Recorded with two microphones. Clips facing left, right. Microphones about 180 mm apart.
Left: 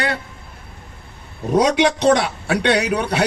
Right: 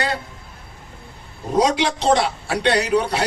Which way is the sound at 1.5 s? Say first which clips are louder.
Left 3 dB; 65° left (ahead or behind).